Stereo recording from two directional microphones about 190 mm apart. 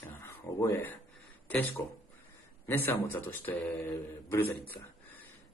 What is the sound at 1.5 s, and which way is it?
Speech, 10° left (ahead or behind).